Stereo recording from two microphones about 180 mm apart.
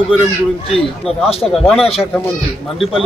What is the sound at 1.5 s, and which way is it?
Speech, centre (ahead or behind).